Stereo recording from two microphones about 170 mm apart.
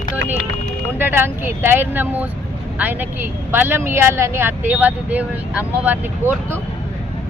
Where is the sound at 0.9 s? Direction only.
10° right (ahead or behind).